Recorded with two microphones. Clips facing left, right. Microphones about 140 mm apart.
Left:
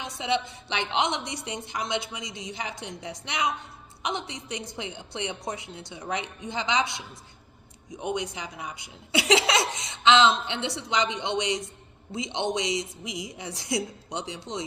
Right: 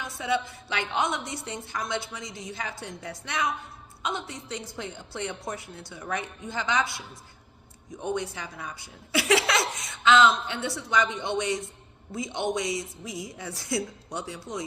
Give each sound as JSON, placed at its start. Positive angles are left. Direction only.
{"t": 0.0, "sound": "a woman's voice", "side_deg": 20}